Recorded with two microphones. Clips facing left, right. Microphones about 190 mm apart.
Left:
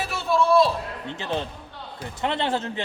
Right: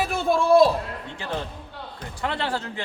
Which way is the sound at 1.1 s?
25° left (ahead or behind).